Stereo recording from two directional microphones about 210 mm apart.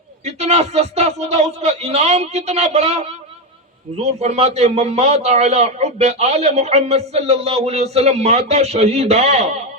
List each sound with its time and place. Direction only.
0.3 s a man's voice: 30° right (ahead or behind)